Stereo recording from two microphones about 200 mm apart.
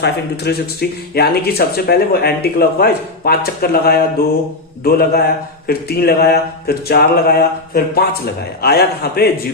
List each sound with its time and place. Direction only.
0.0 s speech: 55° left (ahead or behind)